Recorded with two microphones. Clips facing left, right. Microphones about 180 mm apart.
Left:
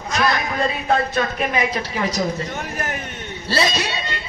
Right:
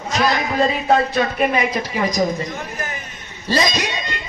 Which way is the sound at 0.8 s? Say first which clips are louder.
Right 3 dB; 35° right (ahead or behind).